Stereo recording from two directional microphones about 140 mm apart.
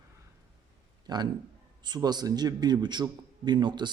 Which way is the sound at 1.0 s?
30° right (ahead or behind).